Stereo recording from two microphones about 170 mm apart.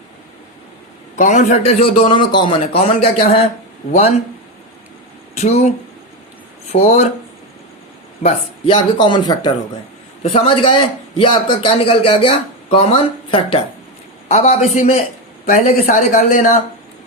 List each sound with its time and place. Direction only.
1.2 s a man's voice: 45° left (ahead or behind)
5.4 s a man's voice: 40° left (ahead or behind)
8.2 s a man's voice: 30° left (ahead or behind); by 16.6 s 50° left (ahead or behind)